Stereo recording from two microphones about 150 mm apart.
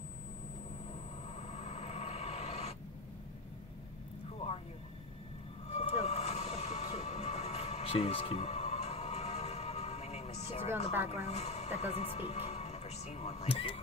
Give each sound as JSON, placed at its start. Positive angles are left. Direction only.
{"t": 1.5, "sound": "a sound", "side_deg": 45}
{"t": 5.7, "sound": "music", "side_deg": 45}
{"t": 11.2, "sound": "speech", "side_deg": 45}